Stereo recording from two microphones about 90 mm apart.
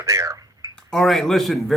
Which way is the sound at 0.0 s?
40° right (ahead or behind).